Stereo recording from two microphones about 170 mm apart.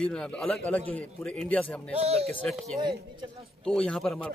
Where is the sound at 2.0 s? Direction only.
35° right (ahead or behind).